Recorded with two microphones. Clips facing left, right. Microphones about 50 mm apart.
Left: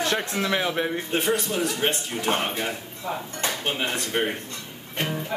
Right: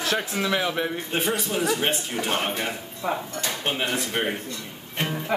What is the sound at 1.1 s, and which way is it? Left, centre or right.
Speech, centre.